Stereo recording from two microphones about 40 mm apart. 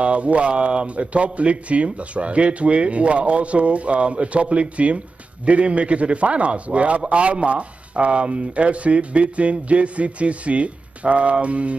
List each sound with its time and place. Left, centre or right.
0.0 s a man's voice: right